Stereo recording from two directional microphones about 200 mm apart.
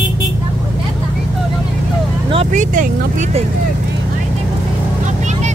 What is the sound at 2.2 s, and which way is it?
Vehicle, 35° right (ahead or behind).